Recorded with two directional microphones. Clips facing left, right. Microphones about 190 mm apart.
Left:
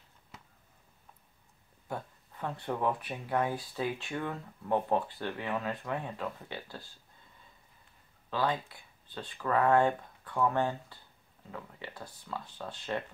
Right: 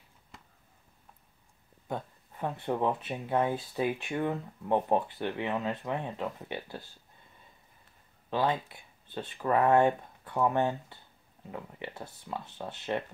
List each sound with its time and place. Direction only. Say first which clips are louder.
1.9 s speech: right 3 dB; 20° right (ahead or behind)
8.3 s speech: right 2 dB; 20° right (ahead or behind)